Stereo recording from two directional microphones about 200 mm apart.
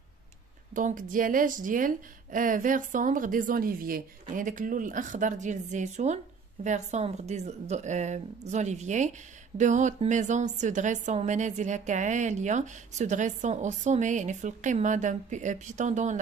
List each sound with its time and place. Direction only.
0.7 s a woman's voice: 40° right (ahead or behind)